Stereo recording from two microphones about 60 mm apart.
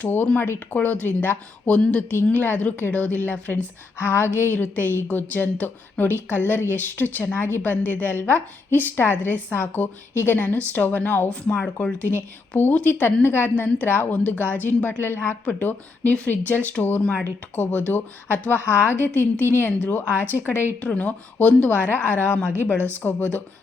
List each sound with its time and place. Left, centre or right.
0.0 s a woman's voice: left
0.3 s speech: left
0.7 s a woman's voice: left
11.3 s a woman's voice: centre
12.0 s a woman's voice: left
14.1 s a woman's voice: left
15.4 s a woman's voice: left
20.8 s a woman's voice: left